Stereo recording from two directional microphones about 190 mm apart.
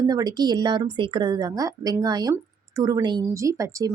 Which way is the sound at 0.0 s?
20° right (ahead or behind).